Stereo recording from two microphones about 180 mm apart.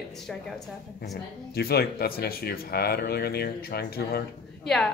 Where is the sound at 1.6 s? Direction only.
60° left (ahead or behind).